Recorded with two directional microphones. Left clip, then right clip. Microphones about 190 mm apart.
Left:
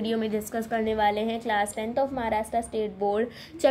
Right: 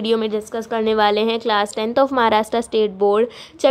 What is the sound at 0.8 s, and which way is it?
A woman's voice, 20° right (ahead or behind).